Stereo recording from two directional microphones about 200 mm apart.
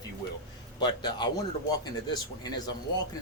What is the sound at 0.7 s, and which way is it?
Speech, 20° left (ahead or behind).